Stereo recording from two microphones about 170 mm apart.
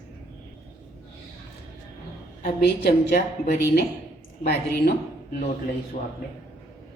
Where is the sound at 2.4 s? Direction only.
70° left (ahead or behind).